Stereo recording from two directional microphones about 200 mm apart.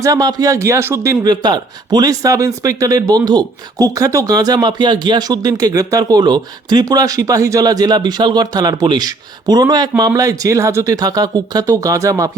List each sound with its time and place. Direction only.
0.0 s speech: 20° right (ahead or behind)